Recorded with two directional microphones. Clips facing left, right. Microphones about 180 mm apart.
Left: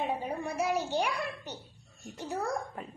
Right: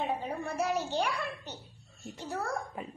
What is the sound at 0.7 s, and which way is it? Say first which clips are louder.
A child's voice: left 1 dB; 15° left (ahead or behind).